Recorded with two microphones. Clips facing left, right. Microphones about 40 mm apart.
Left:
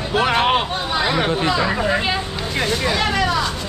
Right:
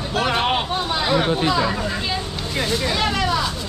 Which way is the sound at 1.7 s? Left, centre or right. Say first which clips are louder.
Left 5 dB; left.